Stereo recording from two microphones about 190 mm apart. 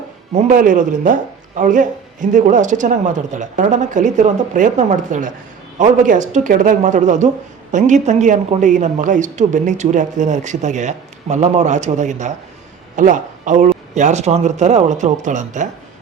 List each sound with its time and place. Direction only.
0.3 s speech: 45° right (ahead or behind)